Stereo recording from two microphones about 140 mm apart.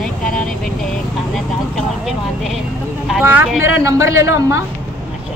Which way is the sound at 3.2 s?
15° right (ahead or behind).